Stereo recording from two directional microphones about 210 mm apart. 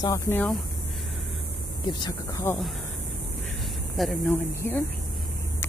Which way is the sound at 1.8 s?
20° left (ahead or behind).